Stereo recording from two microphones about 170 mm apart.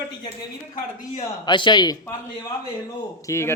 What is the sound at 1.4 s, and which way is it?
Speech, 25° left (ahead or behind).